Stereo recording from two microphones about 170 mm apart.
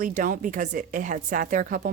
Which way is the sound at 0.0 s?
50° right (ahead or behind).